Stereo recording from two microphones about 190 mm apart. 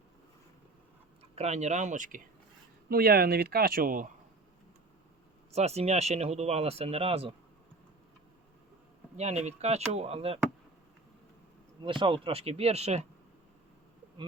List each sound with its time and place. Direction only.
1.4 s speech: 35° right (ahead or behind)
2.9 s speech: 50° right (ahead or behind)
5.5 s speech: 35° right (ahead or behind)
9.1 s speech: 35° right (ahead or behind)
11.8 s speech: 25° right (ahead or behind)